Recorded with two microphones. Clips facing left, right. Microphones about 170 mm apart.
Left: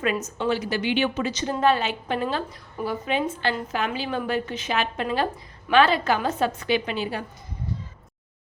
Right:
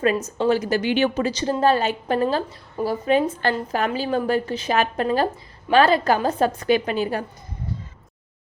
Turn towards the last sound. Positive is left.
turn(degrees=-45)  # may be behind; listen again after turning